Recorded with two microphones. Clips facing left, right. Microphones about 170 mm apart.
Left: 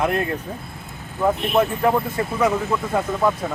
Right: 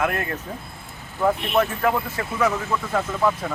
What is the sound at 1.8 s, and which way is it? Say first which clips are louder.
Speech: left 3 dB; 25° left (ahead or behind).